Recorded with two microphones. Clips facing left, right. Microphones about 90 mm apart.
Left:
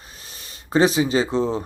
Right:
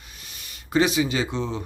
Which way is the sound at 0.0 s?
35° left (ahead or behind).